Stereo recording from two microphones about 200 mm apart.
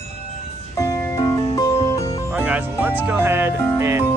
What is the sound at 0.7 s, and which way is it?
Music, 20° left (ahead or behind).